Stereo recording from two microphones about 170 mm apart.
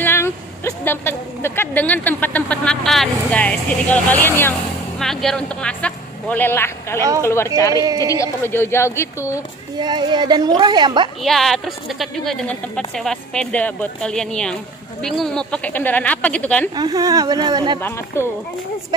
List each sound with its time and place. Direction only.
0.0 s a woman's voice: 15° left (ahead or behind)
4.9 s a man's voice: centre (ahead or behind)
7.0 s a woman's voice: 20° right (ahead or behind)
7.2 s speech: 15° left (ahead or behind)
7.8 s a woman's voice: 20° right (ahead or behind)
8.1 s a man's voice: 15° left (ahead or behind)
9.8 s a woman's voice: 25° right (ahead or behind)
11.2 s a woman's voice: centre (ahead or behind)
16.7 s a woman's voice: 25° right (ahead or behind)
17.8 s a man's voice: 15° left (ahead or behind)